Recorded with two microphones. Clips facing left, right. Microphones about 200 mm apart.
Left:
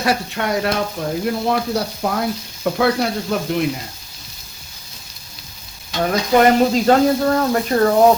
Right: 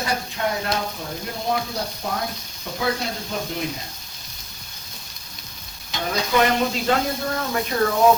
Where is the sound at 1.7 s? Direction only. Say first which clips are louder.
Left 7 dB; 75° left (ahead or behind).